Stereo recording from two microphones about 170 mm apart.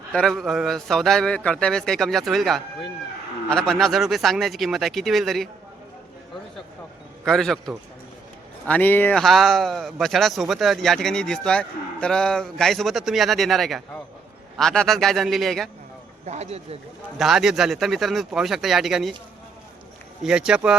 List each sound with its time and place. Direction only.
0.1 s speech: 5° left (ahead or behind)
7.3 s speech: centre (ahead or behind)
16.2 s speech: 40° right (ahead or behind)
17.2 s speech: centre (ahead or behind)
20.2 s speech: 5° right (ahead or behind)